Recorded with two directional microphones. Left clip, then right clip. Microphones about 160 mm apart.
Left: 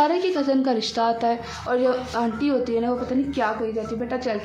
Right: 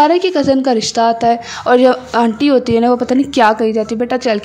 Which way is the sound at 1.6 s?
65° right (ahead or behind).